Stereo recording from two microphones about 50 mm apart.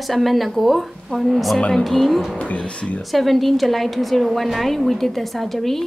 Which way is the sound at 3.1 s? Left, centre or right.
Centre.